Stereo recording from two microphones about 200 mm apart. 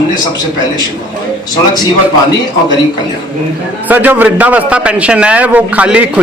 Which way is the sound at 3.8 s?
10° right (ahead or behind).